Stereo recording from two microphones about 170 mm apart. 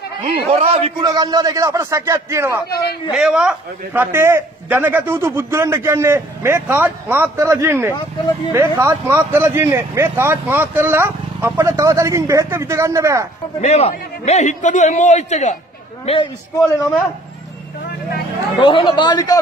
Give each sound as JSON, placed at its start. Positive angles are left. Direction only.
{"t": 0.2, "sound": "a man's voice", "side_deg": -35}
{"t": 1.0, "sound": "a man's voice", "side_deg": -20}
{"t": 3.1, "sound": "a man's voice", "side_deg": -5}
{"t": 13.6, "sound": "a man's voice", "side_deg": 40}
{"t": 18.7, "sound": "speech", "side_deg": 30}